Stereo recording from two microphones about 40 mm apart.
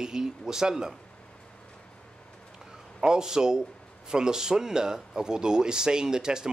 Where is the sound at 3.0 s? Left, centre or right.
Centre.